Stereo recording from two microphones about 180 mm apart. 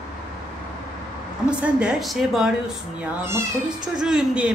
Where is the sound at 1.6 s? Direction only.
5° right (ahead or behind).